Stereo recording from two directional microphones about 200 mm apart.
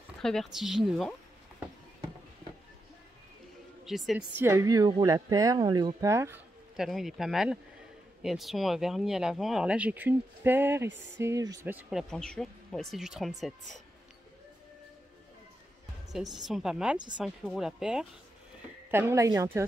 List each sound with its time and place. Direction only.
0.2 s speech: centre (ahead or behind)
3.8 s a woman's voice: centre (ahead or behind)
4.4 s speech: 15° right (ahead or behind)
6.8 s speech: centre (ahead or behind)
16.1 s speech: centre (ahead or behind); by 19.6 s 15° right (ahead or behind)